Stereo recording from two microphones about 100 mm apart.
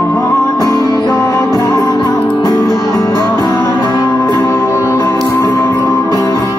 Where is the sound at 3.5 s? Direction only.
20° left (ahead or behind).